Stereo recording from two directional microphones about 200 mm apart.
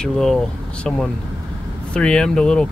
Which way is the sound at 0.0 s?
Centre (ahead or behind).